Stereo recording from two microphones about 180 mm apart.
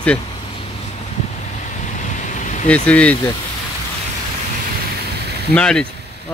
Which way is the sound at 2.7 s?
5° left (ahead or behind).